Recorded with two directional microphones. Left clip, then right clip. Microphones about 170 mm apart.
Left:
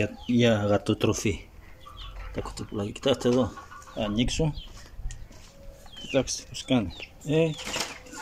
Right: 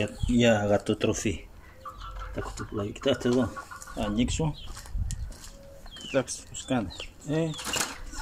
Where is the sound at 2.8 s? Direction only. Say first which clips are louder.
Left 2 dB; 25° left (ahead or behind).